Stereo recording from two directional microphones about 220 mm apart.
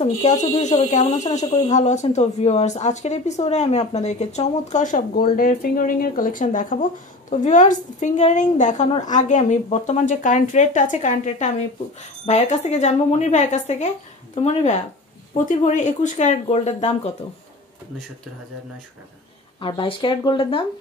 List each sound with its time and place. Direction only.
0.0 s speech: 30° left (ahead or behind)
19.6 s speech: 25° left (ahead or behind)